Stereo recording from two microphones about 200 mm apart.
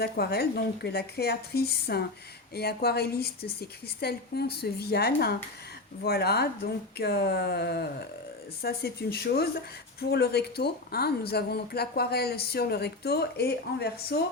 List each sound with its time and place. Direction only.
0.0 s speech: 55° left (ahead or behind)